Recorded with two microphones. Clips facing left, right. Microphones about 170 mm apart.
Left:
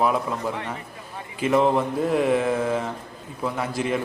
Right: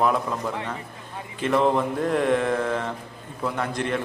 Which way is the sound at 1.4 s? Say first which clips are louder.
Left 1 dB; 5° left (ahead or behind).